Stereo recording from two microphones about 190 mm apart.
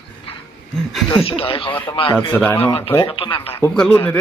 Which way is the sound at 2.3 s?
10° left (ahead or behind).